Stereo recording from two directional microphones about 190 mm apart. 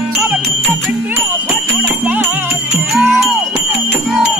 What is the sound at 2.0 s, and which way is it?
Music, 5° right (ahead or behind).